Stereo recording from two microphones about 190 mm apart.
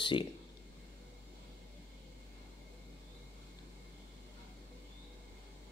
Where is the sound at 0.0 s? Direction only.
25° left (ahead or behind).